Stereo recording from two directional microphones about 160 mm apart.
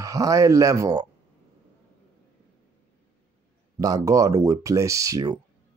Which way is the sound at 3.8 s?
20° right (ahead or behind).